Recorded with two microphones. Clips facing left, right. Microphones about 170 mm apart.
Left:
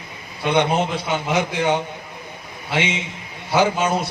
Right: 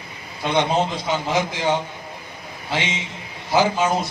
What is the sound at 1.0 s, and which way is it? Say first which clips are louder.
Speech: left 1 dB; 65° left (ahead or behind).